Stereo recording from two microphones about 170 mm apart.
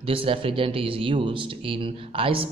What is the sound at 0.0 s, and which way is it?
Speech, 30° right (ahead or behind).